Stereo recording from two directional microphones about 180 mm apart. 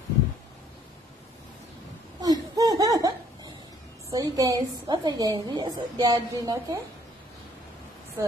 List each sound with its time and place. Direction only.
2.2 s laughter: 20° right (ahead or behind)
4.1 s a woman's voice: 20° right (ahead or behind)